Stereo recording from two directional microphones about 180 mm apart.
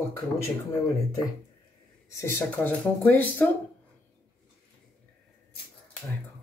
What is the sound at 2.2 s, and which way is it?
Speech, 10° left (ahead or behind).